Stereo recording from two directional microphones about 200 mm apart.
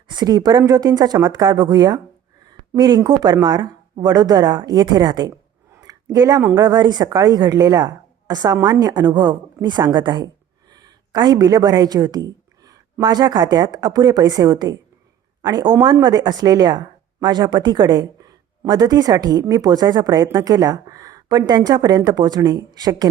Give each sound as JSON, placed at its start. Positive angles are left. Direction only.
{"t": 0.1, "sound": "speech", "side_deg": -20}
{"t": 5.7, "sound": "a sound", "side_deg": -20}
{"t": 6.6, "sound": "a woman's voice", "side_deg": -20}